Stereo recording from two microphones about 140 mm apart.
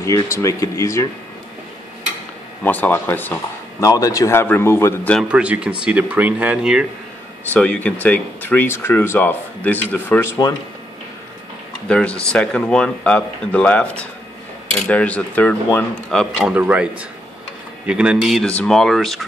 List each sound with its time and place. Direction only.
0.0 s speech: 20° left (ahead or behind)
2.6 s speech: 15° left (ahead or behind)
3.8 s speech: 25° left (ahead or behind)
5.3 s speech: 10° right (ahead or behind)
7.5 s speech: 10° left (ahead or behind)
11.9 s speech: 10° left (ahead or behind)
16.5 s speech: 10° right (ahead or behind)